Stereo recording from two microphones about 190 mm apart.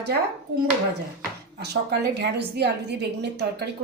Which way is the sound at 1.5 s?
60° right (ahead or behind).